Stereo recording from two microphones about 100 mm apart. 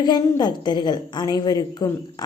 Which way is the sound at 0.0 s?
45° left (ahead or behind).